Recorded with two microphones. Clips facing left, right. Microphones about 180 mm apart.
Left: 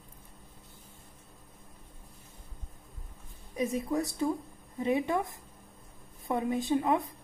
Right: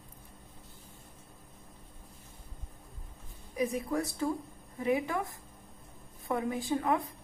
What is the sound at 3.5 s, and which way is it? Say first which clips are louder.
A woman's voice: left 1 dB; 25° left (ahead or behind).